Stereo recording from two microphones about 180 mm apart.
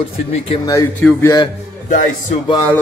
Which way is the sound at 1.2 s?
25° left (ahead or behind).